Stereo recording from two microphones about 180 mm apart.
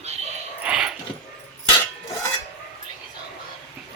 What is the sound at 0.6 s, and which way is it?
Dog, 5° right (ahead or behind).